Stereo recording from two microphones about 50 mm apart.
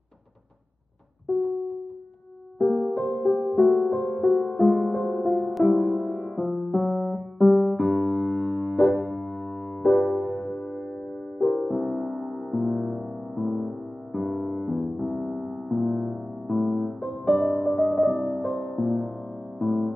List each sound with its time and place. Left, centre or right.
1.3 s music: centre
2.6 s music: left
2.9 s music: centre
14.2 s music: centre
17.7 s music: centre
18.3 s music: centre